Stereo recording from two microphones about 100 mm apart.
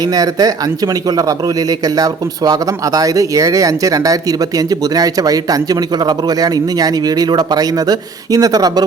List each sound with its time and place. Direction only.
0.0 s speech: 40° right (ahead or behind)